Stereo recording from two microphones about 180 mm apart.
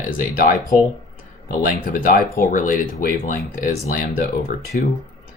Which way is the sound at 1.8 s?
50° left (ahead or behind).